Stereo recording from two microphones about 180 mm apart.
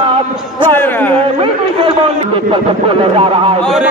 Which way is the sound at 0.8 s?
10° left (ahead or behind).